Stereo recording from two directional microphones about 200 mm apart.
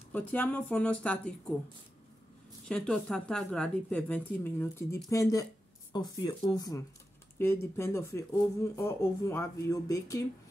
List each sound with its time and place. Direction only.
0.1 s a woman's voice: 10° left (ahead or behind)
2.7 s a woman's voice: 5° left (ahead or behind)